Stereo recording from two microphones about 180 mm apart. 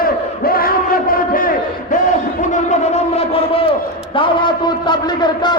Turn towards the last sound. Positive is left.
turn(degrees=25)  # may be behind; listen again after turning